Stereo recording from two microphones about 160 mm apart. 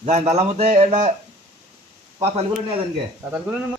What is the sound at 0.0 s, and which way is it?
Speech, 45° right (ahead or behind).